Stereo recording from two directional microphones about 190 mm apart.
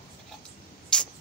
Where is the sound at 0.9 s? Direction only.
5° left (ahead or behind).